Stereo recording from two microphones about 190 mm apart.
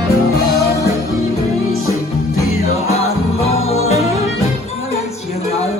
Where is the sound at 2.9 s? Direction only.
35° left (ahead or behind).